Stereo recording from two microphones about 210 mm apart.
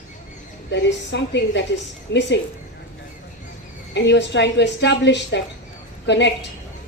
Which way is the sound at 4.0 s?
55° left (ahead or behind).